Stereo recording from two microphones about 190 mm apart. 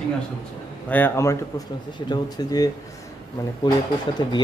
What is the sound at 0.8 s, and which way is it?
Speech, 10° left (ahead or behind).